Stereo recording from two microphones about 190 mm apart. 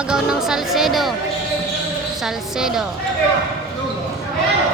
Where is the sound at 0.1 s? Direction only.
5° right (ahead or behind).